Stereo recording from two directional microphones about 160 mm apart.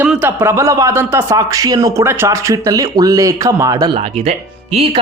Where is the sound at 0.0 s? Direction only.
10° right (ahead or behind).